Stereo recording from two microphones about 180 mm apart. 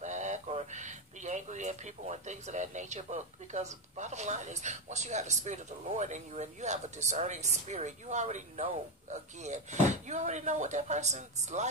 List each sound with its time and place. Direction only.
0.0 s speech: 40° right (ahead or behind)